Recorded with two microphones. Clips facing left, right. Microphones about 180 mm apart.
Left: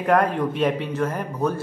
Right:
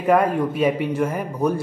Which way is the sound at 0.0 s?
5° right (ahead or behind).